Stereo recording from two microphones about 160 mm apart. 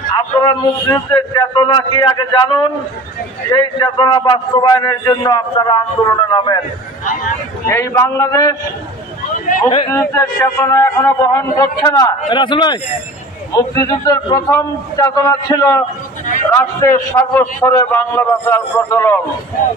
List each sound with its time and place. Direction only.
0.1 s a man's voice: 25° left (ahead or behind)
7.6 s a man's voice: 15° left (ahead or behind)
9.8 s a man's voice: 20° left (ahead or behind)